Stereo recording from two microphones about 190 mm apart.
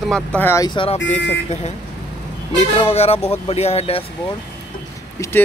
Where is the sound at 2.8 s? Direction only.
30° left (ahead or behind).